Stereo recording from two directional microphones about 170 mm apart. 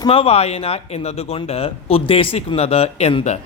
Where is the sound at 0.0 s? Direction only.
35° left (ahead or behind).